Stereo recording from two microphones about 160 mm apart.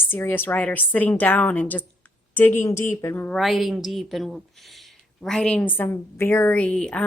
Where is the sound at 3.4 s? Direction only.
Centre (ahead or behind).